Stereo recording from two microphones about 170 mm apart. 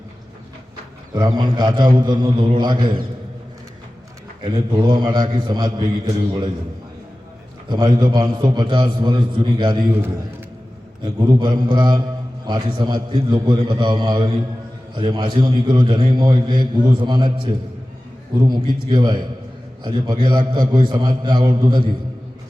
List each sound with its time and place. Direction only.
1.1 s a man's voice: 25° right (ahead or behind)
4.4 s a man's voice: 25° right (ahead or behind)
7.7 s a man's voice: 25° right (ahead or behind)
11.0 s a man's voice: 25° right (ahead or behind)